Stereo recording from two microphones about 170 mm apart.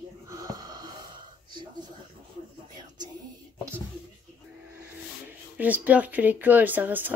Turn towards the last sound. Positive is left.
turn(degrees=-10)  # may be behind; listen again after turning